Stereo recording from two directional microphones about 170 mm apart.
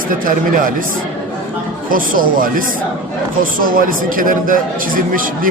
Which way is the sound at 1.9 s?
55° right (ahead or behind).